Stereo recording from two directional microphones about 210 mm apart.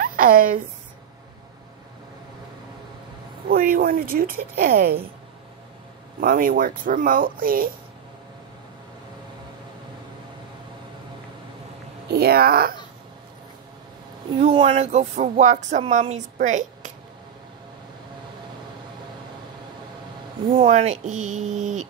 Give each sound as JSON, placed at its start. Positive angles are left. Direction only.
{"t": 0.0, "sound": "speech", "side_deg": -40}
{"t": 3.4, "sound": "a woman's voice", "side_deg": -45}
{"t": 6.2, "sound": "speech", "side_deg": -40}
{"t": 12.1, "sound": "a woman's voice", "side_deg": -50}
{"t": 14.3, "sound": "speech", "side_deg": -30}
{"t": 20.5, "sound": "speech", "side_deg": -30}